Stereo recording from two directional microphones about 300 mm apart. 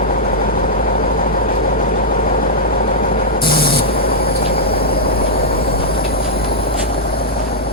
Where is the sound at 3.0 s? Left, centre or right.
Left.